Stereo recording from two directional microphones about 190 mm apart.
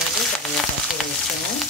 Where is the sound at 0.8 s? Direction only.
Centre (ahead or behind).